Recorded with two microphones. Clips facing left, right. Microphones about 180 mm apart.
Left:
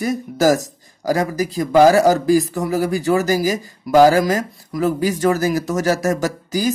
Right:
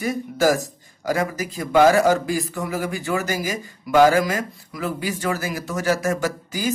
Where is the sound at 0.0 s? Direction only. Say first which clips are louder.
Left 3 dB; 40° left (ahead or behind).